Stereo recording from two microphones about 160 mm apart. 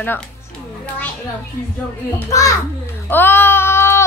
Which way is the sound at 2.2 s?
20° left (ahead or behind).